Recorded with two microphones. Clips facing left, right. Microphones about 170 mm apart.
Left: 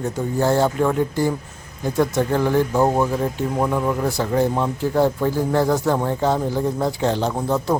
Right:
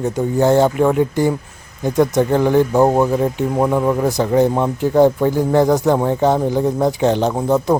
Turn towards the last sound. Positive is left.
turn(degrees=-20)  # may be behind; listen again after turning